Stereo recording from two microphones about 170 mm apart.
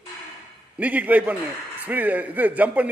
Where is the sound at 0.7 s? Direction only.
10° right (ahead or behind).